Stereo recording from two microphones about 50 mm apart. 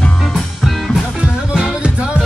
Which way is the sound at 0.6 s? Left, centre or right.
Centre.